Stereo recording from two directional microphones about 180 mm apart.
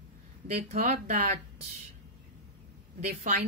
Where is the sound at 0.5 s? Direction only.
35° right (ahead or behind).